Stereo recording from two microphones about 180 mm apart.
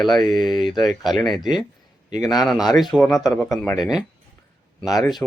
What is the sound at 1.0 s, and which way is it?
Speech, centre (ahead or behind).